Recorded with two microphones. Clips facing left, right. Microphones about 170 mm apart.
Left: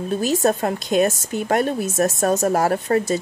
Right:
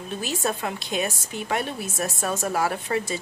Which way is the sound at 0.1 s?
40° left (ahead or behind).